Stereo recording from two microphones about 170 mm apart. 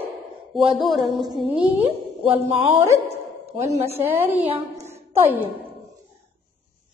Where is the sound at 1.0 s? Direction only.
25° right (ahead or behind).